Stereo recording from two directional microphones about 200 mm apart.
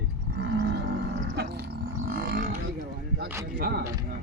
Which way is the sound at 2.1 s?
50° right (ahead or behind).